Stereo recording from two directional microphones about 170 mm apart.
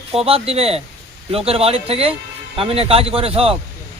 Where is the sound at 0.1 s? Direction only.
35° right (ahead or behind).